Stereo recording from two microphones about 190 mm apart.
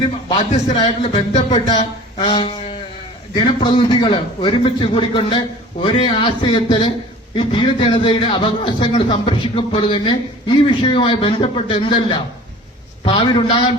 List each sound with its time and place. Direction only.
0.0 s a man's voice: 25° left (ahead or behind)
0.5 s a man's voice: 35° left (ahead or behind)